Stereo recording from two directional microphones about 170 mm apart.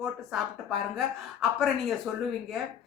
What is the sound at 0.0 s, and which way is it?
A woman's voice, centre (ahead or behind).